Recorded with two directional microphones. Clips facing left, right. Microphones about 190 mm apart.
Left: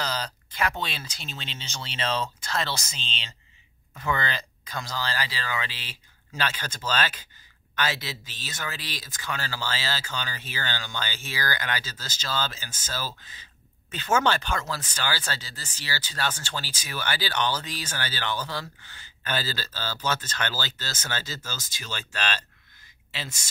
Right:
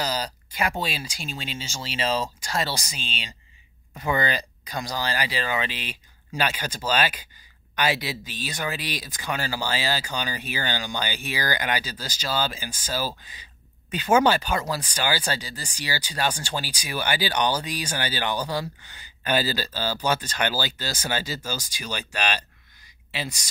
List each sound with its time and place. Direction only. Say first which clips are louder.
0.0 s speech: right 3 dB; 10° right (ahead or behind)